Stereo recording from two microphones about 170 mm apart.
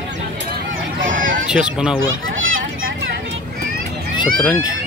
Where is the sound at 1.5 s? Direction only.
5° right (ahead or behind).